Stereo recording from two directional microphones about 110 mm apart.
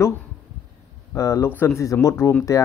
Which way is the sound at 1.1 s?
30° left (ahead or behind).